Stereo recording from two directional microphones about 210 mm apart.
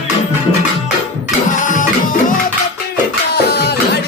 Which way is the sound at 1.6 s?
40° left (ahead or behind).